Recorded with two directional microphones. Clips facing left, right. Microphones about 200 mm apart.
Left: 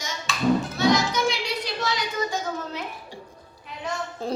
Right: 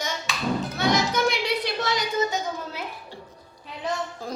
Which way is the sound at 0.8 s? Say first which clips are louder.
Left 1 dB; 55° right (ahead or behind).